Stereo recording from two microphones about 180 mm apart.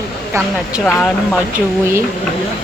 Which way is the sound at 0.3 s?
15° right (ahead or behind).